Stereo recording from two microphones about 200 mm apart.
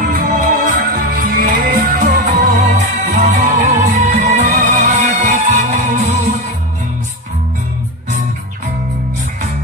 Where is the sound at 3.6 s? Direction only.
35° right (ahead or behind).